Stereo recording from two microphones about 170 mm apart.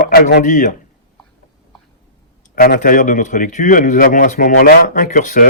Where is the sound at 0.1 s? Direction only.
70° left (ahead or behind).